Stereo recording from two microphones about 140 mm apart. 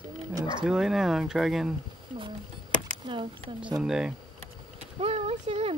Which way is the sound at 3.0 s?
30° right (ahead or behind).